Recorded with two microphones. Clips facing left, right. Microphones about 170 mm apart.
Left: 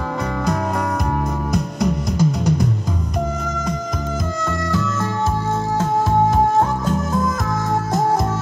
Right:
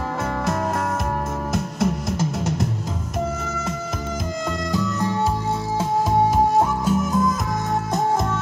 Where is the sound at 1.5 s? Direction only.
Centre (ahead or behind).